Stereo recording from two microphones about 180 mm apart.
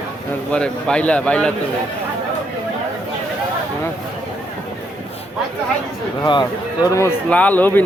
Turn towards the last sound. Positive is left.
turn(degrees=10)  # may be behind; listen again after turning